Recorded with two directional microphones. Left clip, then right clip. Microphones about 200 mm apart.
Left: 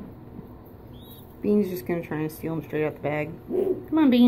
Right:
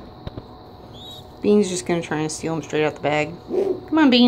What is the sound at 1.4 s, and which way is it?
Speech, 15° right (ahead or behind).